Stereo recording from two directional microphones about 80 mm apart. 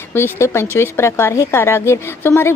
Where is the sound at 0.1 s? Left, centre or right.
Left.